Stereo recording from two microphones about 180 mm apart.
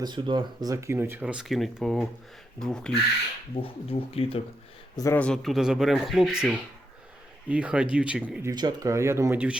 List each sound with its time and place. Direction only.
0.0 s speech: 25° right (ahead or behind); by 2.9 s 5° left (ahead or behind)
3.5 s speech: 30° left (ahead or behind)
4.9 s speech: 15° left (ahead or behind)
5.2 s speech: centre (ahead or behind)